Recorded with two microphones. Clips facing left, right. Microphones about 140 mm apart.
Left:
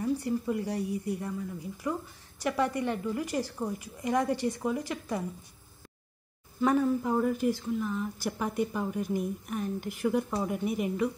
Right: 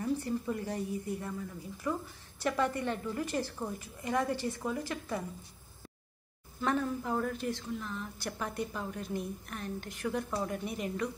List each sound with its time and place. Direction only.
0.2 s a woman's voice: 15° left (ahead or behind)
6.6 s a woman's voice: 10° left (ahead or behind)